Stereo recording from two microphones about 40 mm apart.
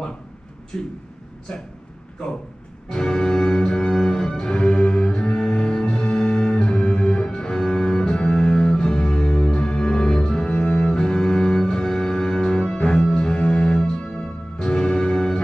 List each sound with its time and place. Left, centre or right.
0.7 s speech: centre
2.9 s music: centre